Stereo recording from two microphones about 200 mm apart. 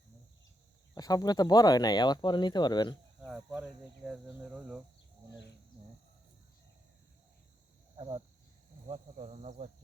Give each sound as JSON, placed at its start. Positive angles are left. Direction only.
{"t": 0.9, "sound": "speech", "side_deg": 20}
{"t": 3.2, "sound": "speech", "side_deg": -5}
{"t": 7.9, "sound": "speech", "side_deg": -25}
{"t": 8.9, "sound": "speech", "side_deg": -35}